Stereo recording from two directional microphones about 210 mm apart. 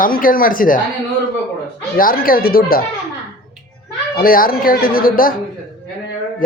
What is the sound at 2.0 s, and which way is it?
Speech, 45° left (ahead or behind).